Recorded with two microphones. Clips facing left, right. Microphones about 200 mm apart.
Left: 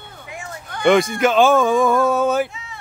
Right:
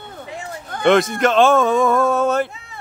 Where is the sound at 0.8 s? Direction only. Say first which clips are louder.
Even; centre (ahead or behind).